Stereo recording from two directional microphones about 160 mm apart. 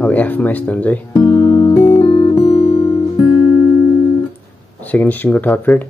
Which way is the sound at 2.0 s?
25° left (ahead or behind).